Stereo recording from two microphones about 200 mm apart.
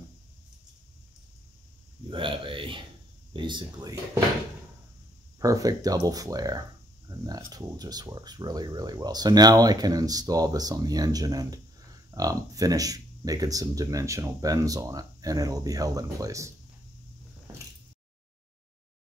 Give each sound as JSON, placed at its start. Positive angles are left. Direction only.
{"t": 2.0, "sound": "a sound", "side_deg": -25}
{"t": 3.3, "sound": "speech", "side_deg": -25}
{"t": 5.4, "sound": "speech", "side_deg": -15}